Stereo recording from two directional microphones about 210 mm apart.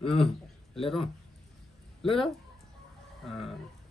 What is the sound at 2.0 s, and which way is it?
Speech, centre (ahead or behind).